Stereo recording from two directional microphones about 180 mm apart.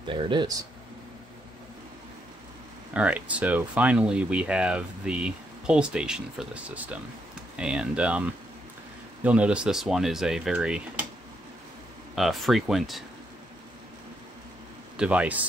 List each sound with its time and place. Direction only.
0.1 s speech: 25° right (ahead or behind)
2.9 s speech: 5° right (ahead or behind)
12.2 s speech: centre (ahead or behind)
15.0 s speech: 5° right (ahead or behind)